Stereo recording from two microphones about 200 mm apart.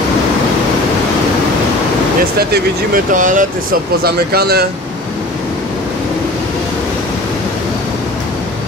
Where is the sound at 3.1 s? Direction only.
40° right (ahead or behind).